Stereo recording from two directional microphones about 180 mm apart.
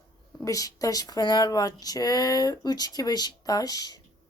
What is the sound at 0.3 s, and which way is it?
Speech, 20° left (ahead or behind).